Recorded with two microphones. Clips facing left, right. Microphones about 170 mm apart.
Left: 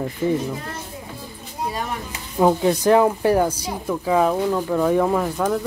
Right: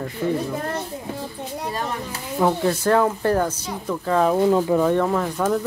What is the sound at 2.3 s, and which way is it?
Speech, 15° left (ahead or behind).